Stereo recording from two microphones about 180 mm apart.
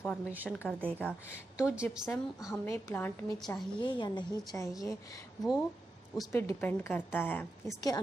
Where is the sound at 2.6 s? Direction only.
10° left (ahead or behind).